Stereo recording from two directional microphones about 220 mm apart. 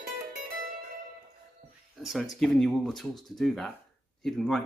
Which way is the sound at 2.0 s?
Centre (ahead or behind).